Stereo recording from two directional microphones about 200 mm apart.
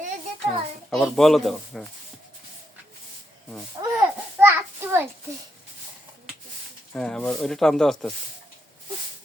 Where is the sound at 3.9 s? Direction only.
10° right (ahead or behind).